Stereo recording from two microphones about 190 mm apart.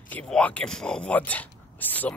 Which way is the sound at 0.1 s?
5° left (ahead or behind).